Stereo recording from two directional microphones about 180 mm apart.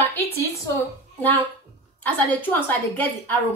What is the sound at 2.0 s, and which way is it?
A woman's voice, 10° left (ahead or behind).